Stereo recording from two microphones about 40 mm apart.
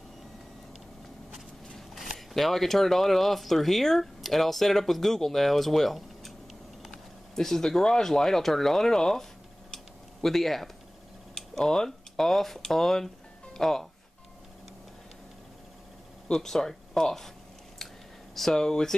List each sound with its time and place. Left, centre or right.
2.0 s speech: centre
10.2 s speech: centre
16.3 s speech: centre
18.3 s a sound: centre
18.6 s speech: centre